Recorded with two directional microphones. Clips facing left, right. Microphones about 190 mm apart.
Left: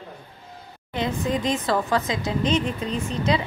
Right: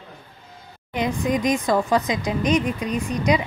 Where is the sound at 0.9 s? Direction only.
15° right (ahead or behind).